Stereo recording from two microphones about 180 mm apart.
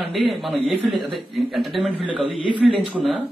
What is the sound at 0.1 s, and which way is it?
A man's voice, centre (ahead or behind).